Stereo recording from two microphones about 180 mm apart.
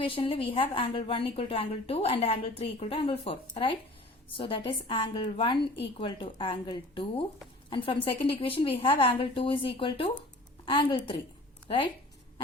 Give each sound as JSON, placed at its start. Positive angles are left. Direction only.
{"t": 0.0, "sound": "a woman's voice", "side_deg": 30}